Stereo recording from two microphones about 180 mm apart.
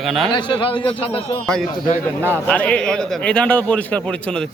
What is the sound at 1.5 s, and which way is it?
A man's voice, 5° left (ahead or behind).